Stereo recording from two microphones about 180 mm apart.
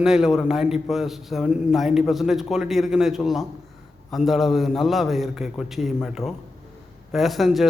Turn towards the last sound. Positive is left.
turn(degrees=0)  # may be behind; listen again after turning